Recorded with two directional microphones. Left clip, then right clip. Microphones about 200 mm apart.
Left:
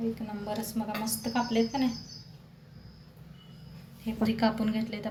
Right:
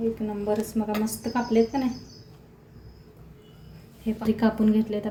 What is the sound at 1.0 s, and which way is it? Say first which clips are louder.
Speech: right 3 dB; 25° right (ahead or behind).